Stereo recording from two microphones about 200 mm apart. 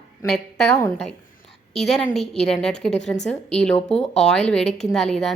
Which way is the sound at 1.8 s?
Centre (ahead or behind).